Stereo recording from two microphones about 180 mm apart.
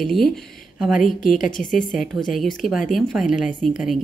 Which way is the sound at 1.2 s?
45° left (ahead or behind).